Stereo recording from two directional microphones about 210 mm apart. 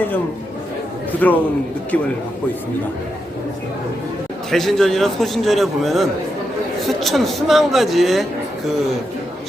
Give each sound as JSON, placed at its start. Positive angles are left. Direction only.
{"t": 1.2, "sound": "a man's voice", "side_deg": 10}
{"t": 4.5, "sound": "a man's voice", "side_deg": 0}